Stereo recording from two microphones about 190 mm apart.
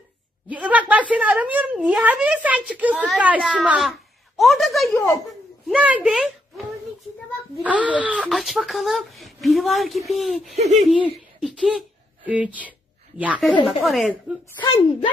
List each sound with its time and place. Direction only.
0.7 s a woman's voice: 10° right (ahead or behind)
7.6 s speech: 5° right (ahead or behind)
10.5 s speech: 35° right (ahead or behind)
10.8 s a woman's voice: 5° right (ahead or behind)